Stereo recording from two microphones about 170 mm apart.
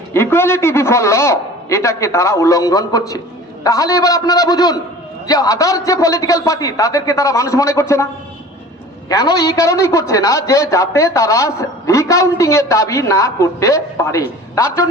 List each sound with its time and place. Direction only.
0.1 s a man's voice: 15° left (ahead or behind)
9.0 s a man's voice: 20° left (ahead or behind)